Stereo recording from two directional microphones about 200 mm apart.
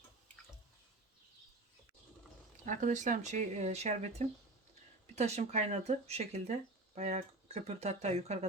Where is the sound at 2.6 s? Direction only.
40° right (ahead or behind).